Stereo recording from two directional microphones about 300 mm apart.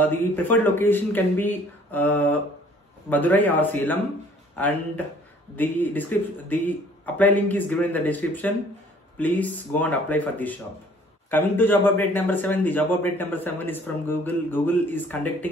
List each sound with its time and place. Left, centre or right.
0.0 s a man's voice: centre